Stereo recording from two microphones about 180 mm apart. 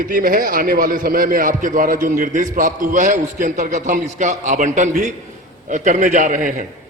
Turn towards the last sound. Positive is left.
turn(degrees=-50)  # may be behind; listen again after turning